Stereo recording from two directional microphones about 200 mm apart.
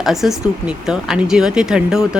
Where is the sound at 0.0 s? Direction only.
Centre (ahead or behind).